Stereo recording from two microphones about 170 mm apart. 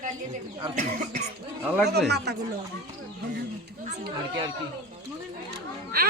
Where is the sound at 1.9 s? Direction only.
75° right (ahead or behind).